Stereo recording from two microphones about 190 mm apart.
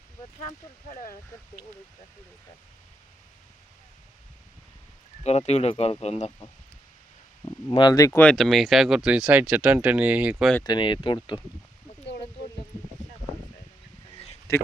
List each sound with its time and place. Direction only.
0.9 s speech: 40° left (ahead or behind)
5.2 s speech: 35° left (ahead or behind)
7.4 s speech: 25° left (ahead or behind); by 10.5 s 5° right (ahead or behind)
10.6 s speech: 25° left (ahead or behind)
14.5 s speech: 15° left (ahead or behind)